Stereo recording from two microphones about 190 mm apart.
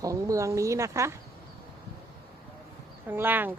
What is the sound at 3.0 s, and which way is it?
Speech, 10° right (ahead or behind).